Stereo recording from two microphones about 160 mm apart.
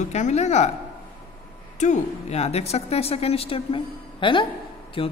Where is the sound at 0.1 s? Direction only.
45° left (ahead or behind).